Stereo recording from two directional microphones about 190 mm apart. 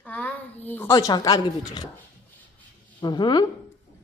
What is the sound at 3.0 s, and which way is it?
Speech, 25° left (ahead or behind).